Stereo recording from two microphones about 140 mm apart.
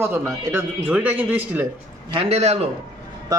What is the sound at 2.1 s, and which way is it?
Speech, 45° right (ahead or behind).